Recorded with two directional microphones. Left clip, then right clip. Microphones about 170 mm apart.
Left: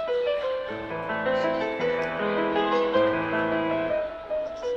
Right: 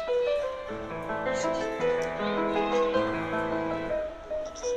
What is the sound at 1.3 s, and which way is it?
Music, 35° left (ahead or behind).